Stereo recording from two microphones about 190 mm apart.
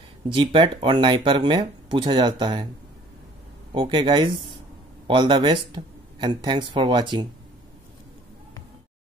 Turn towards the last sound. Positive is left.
turn(degrees=-25)  # may be behind; listen again after turning